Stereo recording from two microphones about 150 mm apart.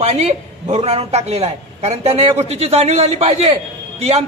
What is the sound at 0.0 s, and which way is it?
A man's voice, 45° right (ahead or behind).